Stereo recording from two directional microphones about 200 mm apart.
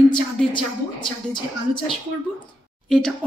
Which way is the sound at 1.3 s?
25° left (ahead or behind).